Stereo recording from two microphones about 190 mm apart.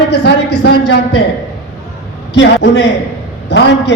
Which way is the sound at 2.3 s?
65° left (ahead or behind).